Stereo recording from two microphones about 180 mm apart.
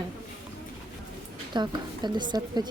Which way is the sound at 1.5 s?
25° right (ahead or behind).